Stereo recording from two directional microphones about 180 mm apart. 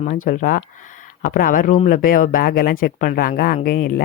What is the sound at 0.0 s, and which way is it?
Speech, 40° left (ahead or behind).